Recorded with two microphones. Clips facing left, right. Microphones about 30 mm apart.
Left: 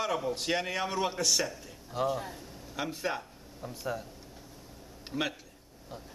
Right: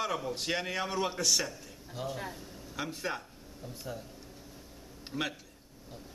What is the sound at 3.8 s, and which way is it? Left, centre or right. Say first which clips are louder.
Speech: left 6 dB; left.